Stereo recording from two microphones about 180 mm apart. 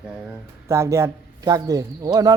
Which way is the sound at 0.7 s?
15° right (ahead or behind).